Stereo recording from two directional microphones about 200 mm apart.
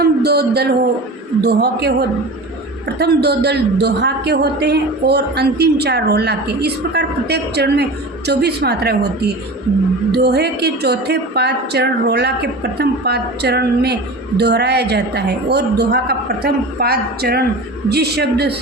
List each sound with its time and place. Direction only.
0.0 s a man's voice: 50° right (ahead or behind)